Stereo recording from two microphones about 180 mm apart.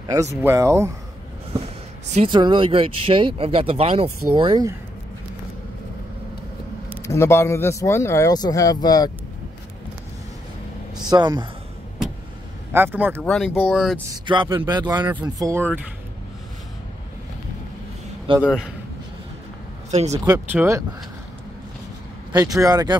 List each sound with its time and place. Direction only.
0.4 s speech: 15° right (ahead or behind)
2.2 s speech: 25° right (ahead or behind)
7.0 s speech: 15° left (ahead or behind)
11.1 s speech: 25° right (ahead or behind)
12.7 s speech: 10° right (ahead or behind)
13.2 s speech: centre (ahead or behind)
14.2 s speech: 25° right (ahead or behind)
18.4 s speech: 5° right (ahead or behind)
19.9 s speech: 40° right (ahead or behind)
20.2 s speech: 15° right (ahead or behind)
22.3 s speech: 20° right (ahead or behind)